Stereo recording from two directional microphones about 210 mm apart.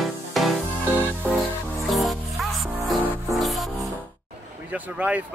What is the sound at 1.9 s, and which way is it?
Music, centre (ahead or behind).